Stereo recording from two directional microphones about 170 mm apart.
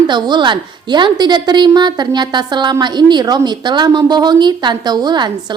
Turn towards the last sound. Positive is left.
turn(degrees=-25)  # may be behind; listen again after turning